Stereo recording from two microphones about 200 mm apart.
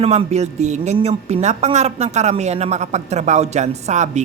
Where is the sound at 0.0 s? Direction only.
30° right (ahead or behind).